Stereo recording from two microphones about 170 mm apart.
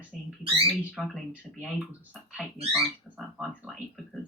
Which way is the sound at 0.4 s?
30° right (ahead or behind).